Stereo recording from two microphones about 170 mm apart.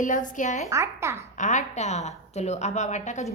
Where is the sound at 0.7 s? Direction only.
15° right (ahead or behind).